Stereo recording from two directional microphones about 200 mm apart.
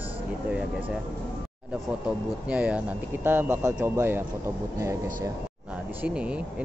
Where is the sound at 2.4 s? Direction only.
5° right (ahead or behind).